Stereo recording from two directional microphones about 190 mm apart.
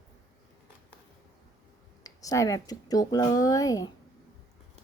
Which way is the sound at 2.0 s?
15° left (ahead or behind).